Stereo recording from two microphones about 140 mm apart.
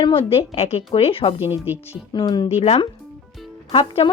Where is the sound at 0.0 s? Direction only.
40° left (ahead or behind).